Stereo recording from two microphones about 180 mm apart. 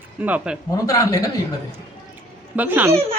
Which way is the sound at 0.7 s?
20° left (ahead or behind).